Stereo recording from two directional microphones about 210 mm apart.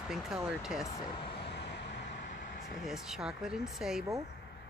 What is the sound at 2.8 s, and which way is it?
Speech, centre (ahead or behind).